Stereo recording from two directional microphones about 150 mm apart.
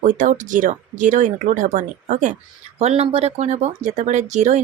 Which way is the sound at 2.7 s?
45° right (ahead or behind).